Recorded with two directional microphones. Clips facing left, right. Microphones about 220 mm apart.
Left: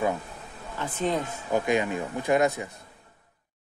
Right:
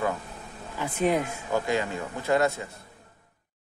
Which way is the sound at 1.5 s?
15° left (ahead or behind).